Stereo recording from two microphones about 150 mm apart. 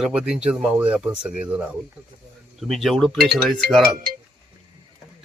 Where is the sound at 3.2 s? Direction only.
90° right.